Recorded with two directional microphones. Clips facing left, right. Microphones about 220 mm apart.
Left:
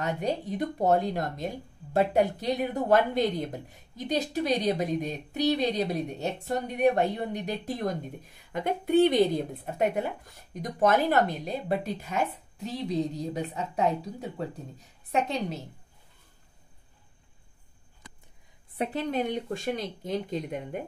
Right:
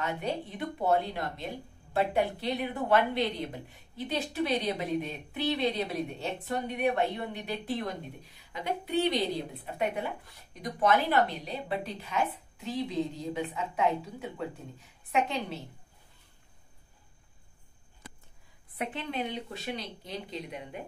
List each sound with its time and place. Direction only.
0.0 s a woman's voice: 40° left (ahead or behind)
18.8 s speech: 40° left (ahead or behind)